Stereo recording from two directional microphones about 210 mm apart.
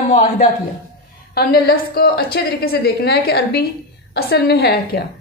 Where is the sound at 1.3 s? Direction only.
50° left (ahead or behind).